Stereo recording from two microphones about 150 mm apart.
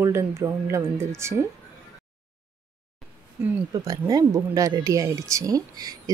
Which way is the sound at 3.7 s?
25° right (ahead or behind).